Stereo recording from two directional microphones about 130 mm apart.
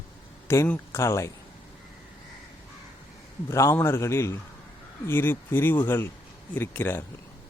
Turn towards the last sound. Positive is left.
turn(degrees=15)  # may be behind; listen again after turning